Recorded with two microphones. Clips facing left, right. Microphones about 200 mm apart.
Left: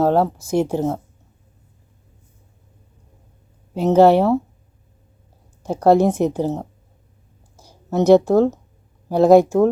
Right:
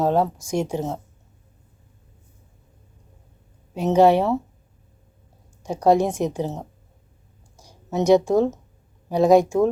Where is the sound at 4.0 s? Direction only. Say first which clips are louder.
Left 3 dB; 60° left (ahead or behind).